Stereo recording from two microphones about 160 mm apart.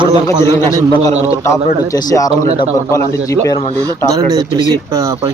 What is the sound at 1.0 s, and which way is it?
A man's voice, 20° left (ahead or behind).